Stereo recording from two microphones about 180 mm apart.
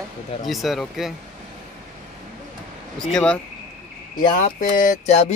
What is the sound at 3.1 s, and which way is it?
Speech, 5° left (ahead or behind).